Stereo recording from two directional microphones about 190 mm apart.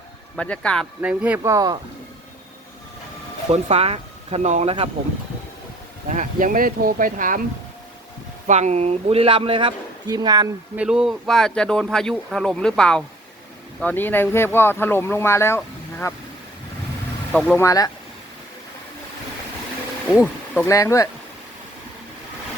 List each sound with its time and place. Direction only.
0.3 s speech: 5° left (ahead or behind)
1.0 s speech: 5° right (ahead or behind)
3.5 s speech: 35° right (ahead or behind)
6.1 s speech: 45° right (ahead or behind)
8.4 s speech: 40° right (ahead or behind); by 10.5 s 20° right (ahead or behind)
10.8 s speech: 5° right (ahead or behind); by 16.1 s 15° left (ahead or behind)
17.3 s speech: 5° left (ahead or behind)
17.6 s speech: 20° left (ahead or behind)
20.2 s speech: 10° left (ahead or behind)